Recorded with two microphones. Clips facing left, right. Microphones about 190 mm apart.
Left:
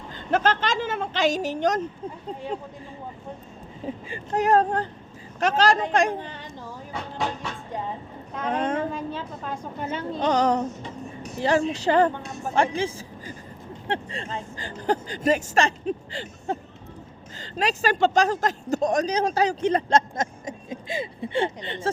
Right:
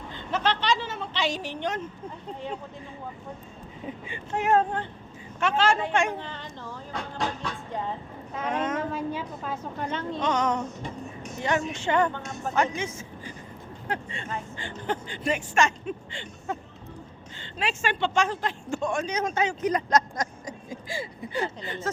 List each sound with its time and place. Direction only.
0.1 s a woman's voice: 50° left (ahead or behind)
3.8 s speech: 35° left (ahead or behind)
6.1 s a sound: 15° left (ahead or behind)
8.4 s speech: 35° left (ahead or behind)
8.9 s a woman's voice: 10° right (ahead or behind); by 10.2 s 5° left (ahead or behind)
10.2 s speech: 35° left (ahead or behind)